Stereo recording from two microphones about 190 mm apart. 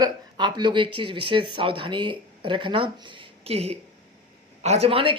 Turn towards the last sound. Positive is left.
turn(degrees=-30)  # may be behind; listen again after turning